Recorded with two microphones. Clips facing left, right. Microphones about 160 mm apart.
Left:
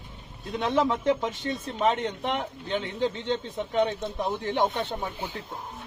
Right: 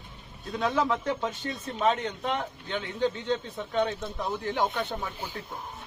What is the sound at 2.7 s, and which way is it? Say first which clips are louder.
Speech: left 1 dB; 25° left (ahead or behind).